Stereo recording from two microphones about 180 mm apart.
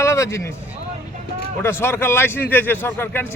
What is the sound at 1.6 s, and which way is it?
Speech, 15° left (ahead or behind).